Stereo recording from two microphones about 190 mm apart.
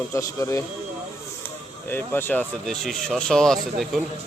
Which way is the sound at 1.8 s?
10° left (ahead or behind).